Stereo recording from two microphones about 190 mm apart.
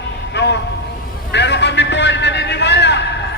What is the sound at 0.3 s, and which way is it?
Vehicle, 65° left (ahead or behind).